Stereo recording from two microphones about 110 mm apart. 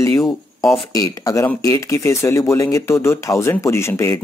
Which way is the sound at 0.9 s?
30° left (ahead or behind).